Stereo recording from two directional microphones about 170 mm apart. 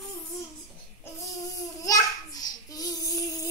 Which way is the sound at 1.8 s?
20° left (ahead or behind).